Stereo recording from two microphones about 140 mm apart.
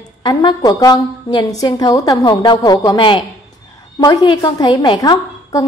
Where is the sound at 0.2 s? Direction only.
30° left (ahead or behind).